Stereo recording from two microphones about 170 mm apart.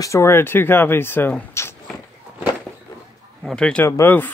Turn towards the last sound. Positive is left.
turn(degrees=10)  # may be behind; listen again after turning